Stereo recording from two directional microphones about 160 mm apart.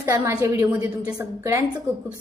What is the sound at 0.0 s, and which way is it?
A woman's voice, 20° right (ahead or behind).